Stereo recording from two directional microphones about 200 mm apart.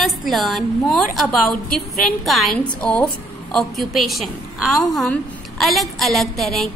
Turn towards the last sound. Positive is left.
turn(degrees=0)  # may be behind; listen again after turning